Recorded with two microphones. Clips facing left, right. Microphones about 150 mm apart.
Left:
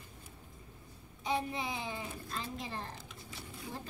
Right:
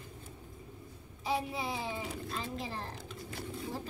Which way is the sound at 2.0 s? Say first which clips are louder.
Right 4 dB; 80° right.